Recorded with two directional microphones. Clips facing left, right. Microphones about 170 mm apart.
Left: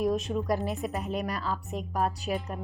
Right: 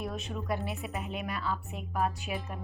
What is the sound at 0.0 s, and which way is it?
A woman's voice, 40° left (ahead or behind).